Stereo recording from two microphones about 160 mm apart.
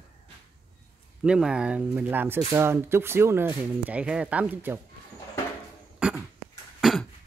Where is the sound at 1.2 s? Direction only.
5° right (ahead or behind).